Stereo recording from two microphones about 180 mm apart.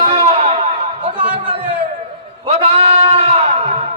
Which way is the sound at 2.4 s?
35° right (ahead or behind).